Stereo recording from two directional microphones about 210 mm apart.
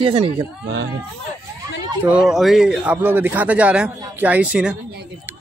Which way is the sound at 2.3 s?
Centre (ahead or behind).